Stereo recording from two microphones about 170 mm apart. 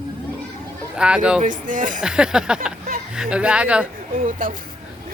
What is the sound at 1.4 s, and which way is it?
Speech, 50° right (ahead or behind).